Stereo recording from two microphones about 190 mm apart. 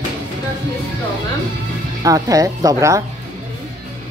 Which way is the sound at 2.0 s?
20° right (ahead or behind).